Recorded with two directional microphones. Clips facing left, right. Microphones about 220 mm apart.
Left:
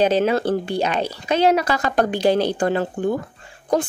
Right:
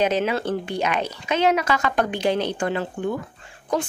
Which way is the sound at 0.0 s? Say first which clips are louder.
Left 4 dB; 35° left (ahead or behind).